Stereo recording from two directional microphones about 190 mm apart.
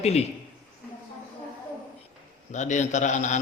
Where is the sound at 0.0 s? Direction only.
35° left (ahead or behind).